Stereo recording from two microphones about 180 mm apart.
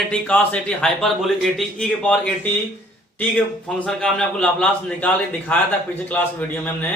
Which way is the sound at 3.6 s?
5° left (ahead or behind).